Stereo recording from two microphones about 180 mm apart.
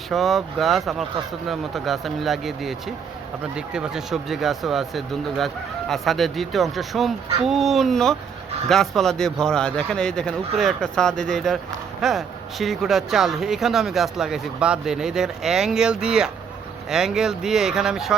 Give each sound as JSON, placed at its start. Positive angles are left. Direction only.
{"t": 0.1, "sound": "speech", "side_deg": 0}